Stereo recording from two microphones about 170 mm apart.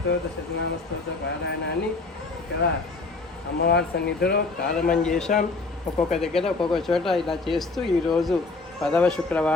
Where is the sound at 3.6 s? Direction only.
75° left (ahead or behind).